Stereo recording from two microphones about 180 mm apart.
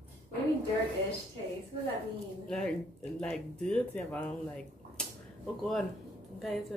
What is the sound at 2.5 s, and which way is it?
Speech, 5° left (ahead or behind).